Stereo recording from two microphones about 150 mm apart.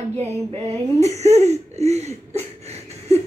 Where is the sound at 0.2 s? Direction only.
45° right (ahead or behind).